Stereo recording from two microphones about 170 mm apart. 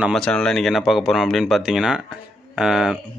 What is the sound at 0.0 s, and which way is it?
Speech, centre (ahead or behind).